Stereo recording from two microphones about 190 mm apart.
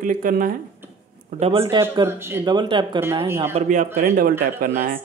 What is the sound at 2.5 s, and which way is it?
Speech, 25° right (ahead or behind).